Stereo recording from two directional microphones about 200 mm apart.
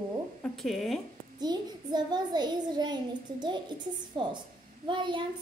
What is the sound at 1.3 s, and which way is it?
A child's voice, 20° right (ahead or behind).